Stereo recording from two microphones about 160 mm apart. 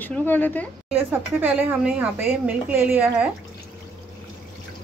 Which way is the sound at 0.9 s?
10° right (ahead or behind).